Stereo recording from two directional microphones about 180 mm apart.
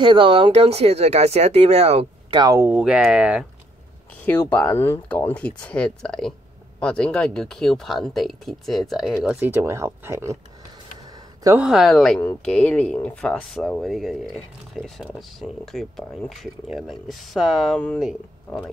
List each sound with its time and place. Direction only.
0.0 s speech: 30° right (ahead or behind)
2.4 s speech: 15° right (ahead or behind)
2.7 s speech: 5° right (ahead or behind)
4.1 s speech: 10° left (ahead or behind)
9.4 s speech: 10° right (ahead or behind)
11.1 s a sound: 20° right (ahead or behind)
11.5 s speech: 5° right (ahead or behind)